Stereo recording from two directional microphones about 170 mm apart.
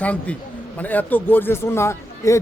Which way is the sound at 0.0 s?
10° left (ahead or behind).